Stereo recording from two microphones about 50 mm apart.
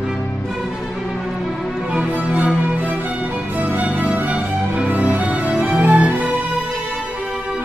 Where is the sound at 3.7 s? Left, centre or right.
Right.